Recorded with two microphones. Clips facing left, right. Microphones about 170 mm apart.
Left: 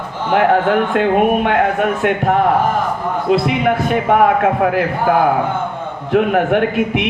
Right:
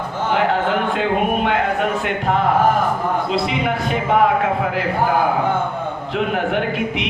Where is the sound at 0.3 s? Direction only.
55° left (ahead or behind).